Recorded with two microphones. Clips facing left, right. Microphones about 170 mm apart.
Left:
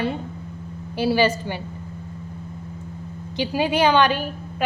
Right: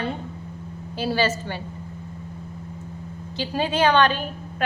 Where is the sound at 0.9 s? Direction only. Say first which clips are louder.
Left 4 dB; 15° left (ahead or behind).